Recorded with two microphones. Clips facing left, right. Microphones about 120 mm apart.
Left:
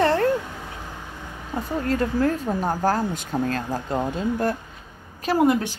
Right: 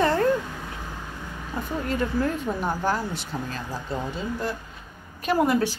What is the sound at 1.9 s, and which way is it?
Speech, 40° left (ahead or behind).